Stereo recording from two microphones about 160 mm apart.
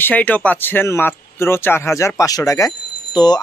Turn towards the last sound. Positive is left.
turn(degrees=25)  # may be behind; listen again after turning